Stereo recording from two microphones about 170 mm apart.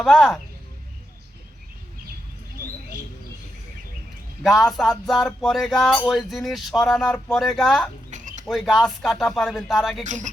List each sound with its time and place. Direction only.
0.0 s speech: centre (ahead or behind)
4.4 s speech: centre (ahead or behind)
8.1 s bird: 45° right (ahead or behind)
8.4 s speech: centre (ahead or behind)
10.0 s speech: 45° right (ahead or behind)